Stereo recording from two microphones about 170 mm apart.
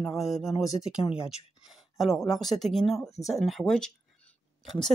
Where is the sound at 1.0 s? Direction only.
35° left (ahead or behind).